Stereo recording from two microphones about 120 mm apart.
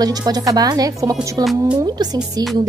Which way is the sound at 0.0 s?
35° right (ahead or behind).